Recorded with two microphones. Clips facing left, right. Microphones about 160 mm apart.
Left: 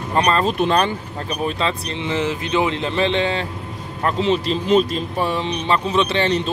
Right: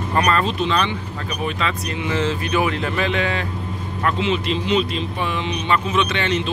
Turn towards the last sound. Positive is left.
turn(degrees=35)  # may be behind; listen again after turning